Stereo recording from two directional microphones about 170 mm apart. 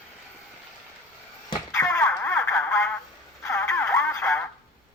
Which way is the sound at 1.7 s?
15° left (ahead or behind).